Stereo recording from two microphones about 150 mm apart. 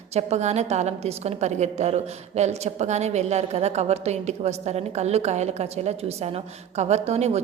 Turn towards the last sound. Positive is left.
turn(degrees=-45)  # may be behind; listen again after turning